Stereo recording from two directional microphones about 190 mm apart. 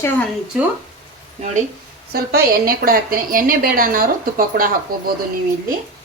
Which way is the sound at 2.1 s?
55° right (ahead or behind).